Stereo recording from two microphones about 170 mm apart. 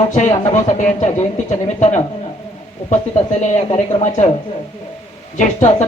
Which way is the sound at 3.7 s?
35° left (ahead or behind).